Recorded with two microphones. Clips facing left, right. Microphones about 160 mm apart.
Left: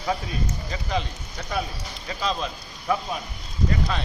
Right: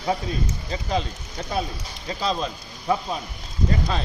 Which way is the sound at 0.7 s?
35° right (ahead or behind).